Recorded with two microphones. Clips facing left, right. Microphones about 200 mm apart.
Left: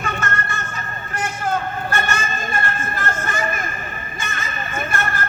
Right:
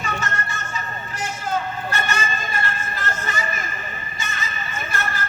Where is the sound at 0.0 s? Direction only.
55° left (ahead or behind).